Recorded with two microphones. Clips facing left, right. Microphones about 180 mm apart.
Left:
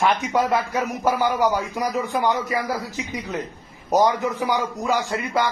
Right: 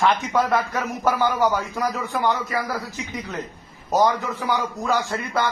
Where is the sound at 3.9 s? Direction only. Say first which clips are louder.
Left 1 dB; 15° left (ahead or behind).